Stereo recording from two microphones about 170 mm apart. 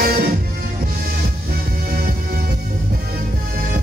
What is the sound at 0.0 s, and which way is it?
Music, 60° right (ahead or behind).